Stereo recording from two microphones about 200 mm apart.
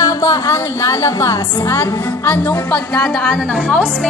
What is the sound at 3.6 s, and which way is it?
Speech, 5° left (ahead or behind).